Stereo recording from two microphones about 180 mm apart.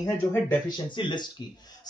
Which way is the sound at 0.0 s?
15° left (ahead or behind).